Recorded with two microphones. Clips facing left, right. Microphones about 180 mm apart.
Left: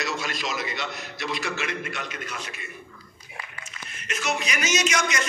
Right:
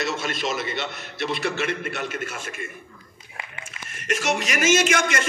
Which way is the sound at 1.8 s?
50° right (ahead or behind).